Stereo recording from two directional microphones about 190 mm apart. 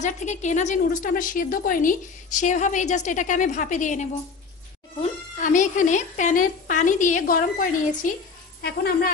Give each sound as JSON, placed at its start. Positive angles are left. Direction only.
{"t": 0.0, "sound": "a woman's voice", "side_deg": 40}